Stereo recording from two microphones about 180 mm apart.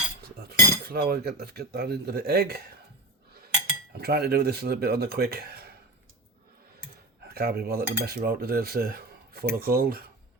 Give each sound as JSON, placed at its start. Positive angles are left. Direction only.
{"t": 0.3, "sound": "speech", "side_deg": -60}
{"t": 3.9, "sound": "speech", "side_deg": -60}
{"t": 7.3, "sound": "speech", "side_deg": -60}